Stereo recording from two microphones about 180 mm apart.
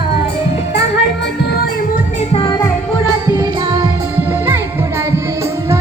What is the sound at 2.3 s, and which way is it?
Music, 25° left (ahead or behind).